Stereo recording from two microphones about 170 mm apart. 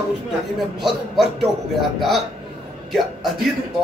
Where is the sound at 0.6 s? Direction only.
Centre (ahead or behind).